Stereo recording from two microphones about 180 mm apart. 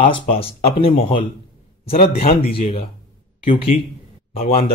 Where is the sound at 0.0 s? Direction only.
30° left (ahead or behind).